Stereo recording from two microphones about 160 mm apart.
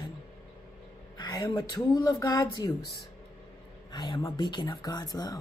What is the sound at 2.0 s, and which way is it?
Speech, 25° left (ahead or behind).